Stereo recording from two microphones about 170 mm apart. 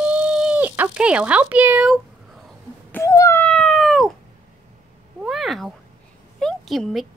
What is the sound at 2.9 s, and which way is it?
Speech, 15° left (ahead or behind).